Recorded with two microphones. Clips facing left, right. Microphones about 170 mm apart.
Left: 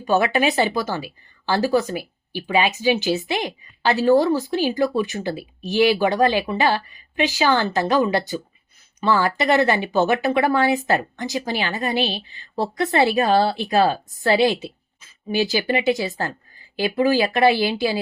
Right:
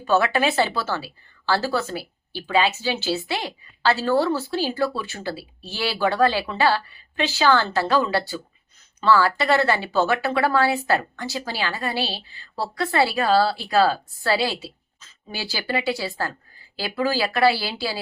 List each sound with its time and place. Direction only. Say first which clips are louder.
0.0 s a woman's voice: left 1 dB; 15° left (ahead or behind)